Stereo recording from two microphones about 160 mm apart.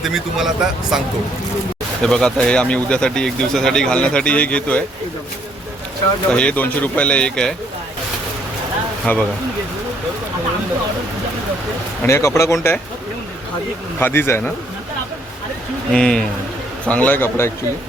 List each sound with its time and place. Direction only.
0.0 s speech: centre (ahead or behind)
6.3 s speech: 10° left (ahead or behind)
9.1 s speech: 10° left (ahead or behind)
12.0 s speech: 20° left (ahead or behind)
14.0 s speech: 15° left (ahead or behind)
15.9 s speech: 5° left (ahead or behind)